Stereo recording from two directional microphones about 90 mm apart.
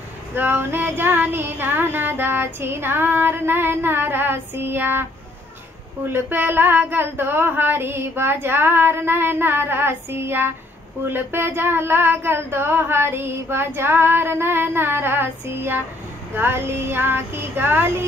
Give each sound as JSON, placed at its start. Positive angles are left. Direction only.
{"t": 0.3, "sound": "female singing", "side_deg": -20}
{"t": 6.0, "sound": "female singing", "side_deg": -25}